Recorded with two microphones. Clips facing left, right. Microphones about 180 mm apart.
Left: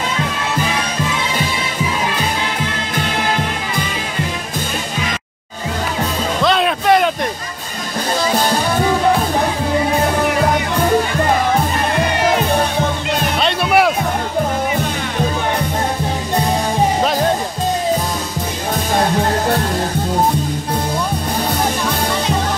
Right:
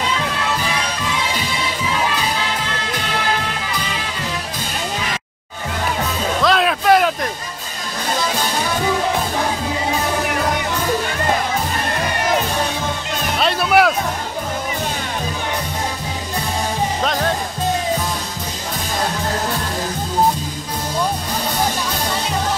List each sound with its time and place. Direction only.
6.4 s music: centre (ahead or behind)
13.4 s music: centre (ahead or behind)